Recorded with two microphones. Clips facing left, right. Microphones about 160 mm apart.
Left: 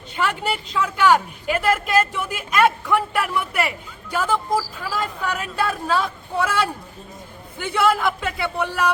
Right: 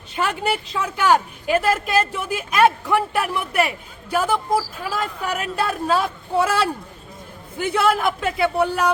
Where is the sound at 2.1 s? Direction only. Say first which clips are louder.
Right 1 dB; 25° right (ahead or behind).